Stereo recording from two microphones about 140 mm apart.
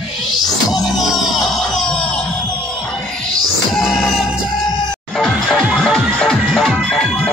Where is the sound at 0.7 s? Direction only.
Centre (ahead or behind).